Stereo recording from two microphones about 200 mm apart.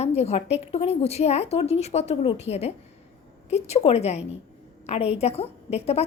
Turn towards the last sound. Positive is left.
turn(degrees=30)  # may be behind; listen again after turning